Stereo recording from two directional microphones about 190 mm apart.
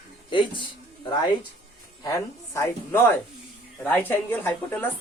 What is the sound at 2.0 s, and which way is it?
Speech, 15° left (ahead or behind).